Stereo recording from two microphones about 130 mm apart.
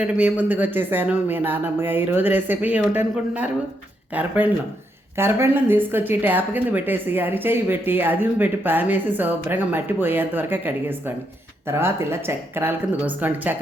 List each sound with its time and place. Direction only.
0.0 s speech: 10° right (ahead or behind)